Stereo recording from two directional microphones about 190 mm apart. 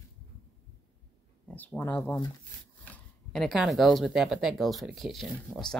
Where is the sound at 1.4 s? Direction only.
10° left (ahead or behind).